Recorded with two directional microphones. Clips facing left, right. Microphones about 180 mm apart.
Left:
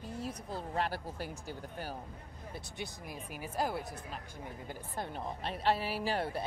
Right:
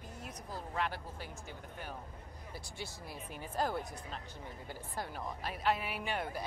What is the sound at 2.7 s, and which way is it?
Speech, 15° left (ahead or behind).